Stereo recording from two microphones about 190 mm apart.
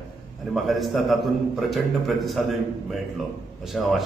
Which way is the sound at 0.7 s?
Centre (ahead or behind).